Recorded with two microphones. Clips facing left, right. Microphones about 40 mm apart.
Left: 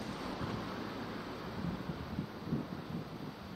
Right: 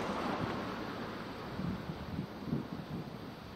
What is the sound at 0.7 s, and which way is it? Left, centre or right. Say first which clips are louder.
Vehicle: right 1 dB; centre.